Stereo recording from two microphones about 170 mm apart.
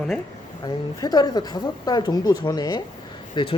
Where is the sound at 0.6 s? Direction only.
25° left (ahead or behind).